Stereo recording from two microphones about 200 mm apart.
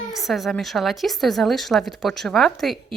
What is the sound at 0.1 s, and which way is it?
A woman's voice, centre (ahead or behind).